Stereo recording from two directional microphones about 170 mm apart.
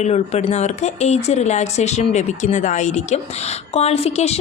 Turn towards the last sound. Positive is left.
turn(degrees=40)  # may be behind; listen again after turning